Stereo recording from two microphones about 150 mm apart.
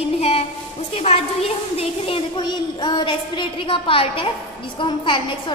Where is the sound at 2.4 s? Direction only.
30° left (ahead or behind).